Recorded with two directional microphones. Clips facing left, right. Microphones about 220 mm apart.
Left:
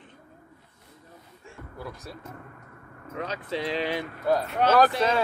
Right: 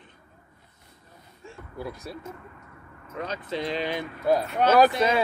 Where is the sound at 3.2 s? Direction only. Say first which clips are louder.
Even; 5° left (ahead or behind).